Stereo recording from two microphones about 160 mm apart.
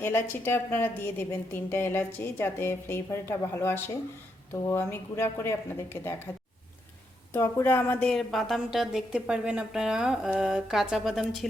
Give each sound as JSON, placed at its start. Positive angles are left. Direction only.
{"t": 0.0, "sound": "a woman's voice", "side_deg": 15}
{"t": 7.3, "sound": "a woman's voice", "side_deg": 15}